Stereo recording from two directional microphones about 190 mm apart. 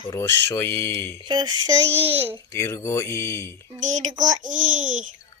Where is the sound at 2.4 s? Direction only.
15° left (ahead or behind).